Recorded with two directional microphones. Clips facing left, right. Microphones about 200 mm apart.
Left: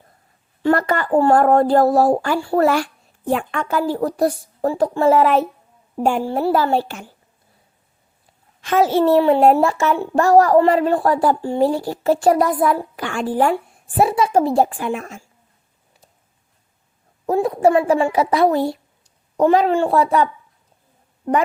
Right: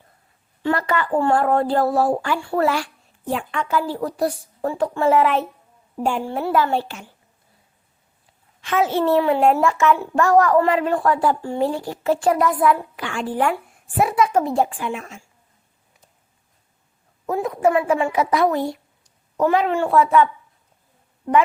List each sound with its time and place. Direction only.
0.6 s a child's voice: 45° left (ahead or behind)
2.6 s a child's voice: 45° left (ahead or behind)
6.2 s a child's voice: 35° left (ahead or behind)
8.6 s a child's voice: 40° left (ahead or behind)
17.2 s a woman's voice: 35° left (ahead or behind)